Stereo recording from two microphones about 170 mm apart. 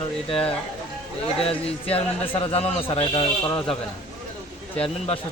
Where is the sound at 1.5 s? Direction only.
35° left (ahead or behind).